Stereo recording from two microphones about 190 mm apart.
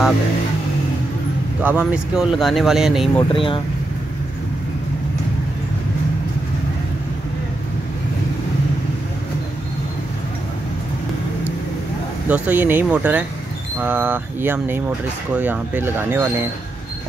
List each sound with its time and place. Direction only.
1.6 s speech: 10° right (ahead or behind)
3.2 s speech: 25° left (ahead or behind)
12.3 s speech: 10° right (ahead or behind)